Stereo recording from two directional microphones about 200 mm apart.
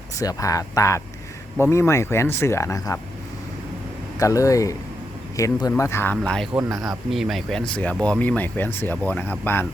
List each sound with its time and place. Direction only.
0.2 s speech: 15° left (ahead or behind)
4.2 s speech: 15° left (ahead or behind)
6.5 s speech: 10° right (ahead or behind); by 9.6 s 10° left (ahead or behind)